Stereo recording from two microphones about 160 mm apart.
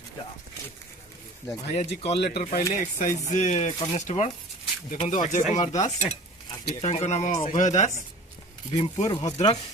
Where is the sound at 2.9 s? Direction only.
50° left (ahead or behind).